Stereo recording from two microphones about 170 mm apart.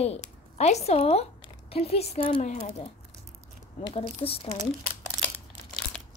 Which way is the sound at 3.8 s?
35° left (ahead or behind).